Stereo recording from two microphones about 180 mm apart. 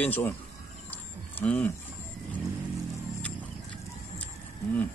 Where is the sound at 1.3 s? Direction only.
10° left (ahead or behind).